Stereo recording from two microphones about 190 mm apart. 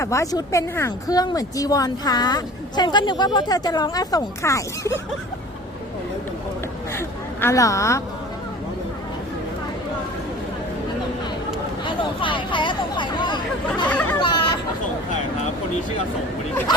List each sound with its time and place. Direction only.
0.0 s speech: 15° left (ahead or behind)
7.4 s a woman's voice: 15° left (ahead or behind)
11.9 s speech: 25° left (ahead or behind)
14.2 s chatter: 25° left (ahead or behind)